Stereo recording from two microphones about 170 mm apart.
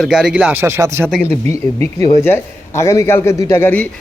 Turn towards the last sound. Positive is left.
turn(degrees=10)  # may be behind; listen again after turning